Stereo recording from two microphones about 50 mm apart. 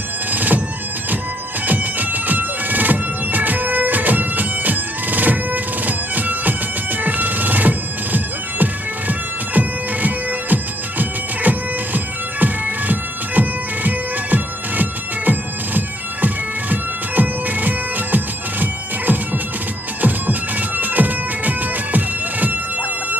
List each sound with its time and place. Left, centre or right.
0.3 s bagpipes: right
1.7 s bagpipes: right